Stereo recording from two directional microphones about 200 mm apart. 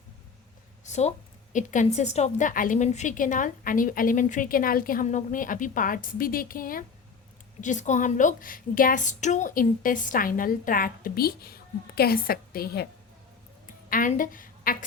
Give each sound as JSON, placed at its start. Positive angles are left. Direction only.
{"t": 0.9, "sound": "a sound", "side_deg": 35}
{"t": 1.5, "sound": "a woman's voice", "side_deg": 40}
{"t": 13.9, "sound": "a woman's voice", "side_deg": 40}